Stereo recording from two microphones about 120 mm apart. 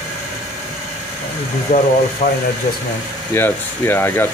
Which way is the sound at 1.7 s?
80° left.